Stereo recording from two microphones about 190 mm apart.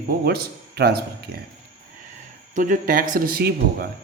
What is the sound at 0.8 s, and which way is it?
Speech, 60° right (ahead or behind).